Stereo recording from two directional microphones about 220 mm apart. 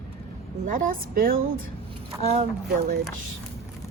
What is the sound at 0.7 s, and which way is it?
Speech, 40° right (ahead or behind).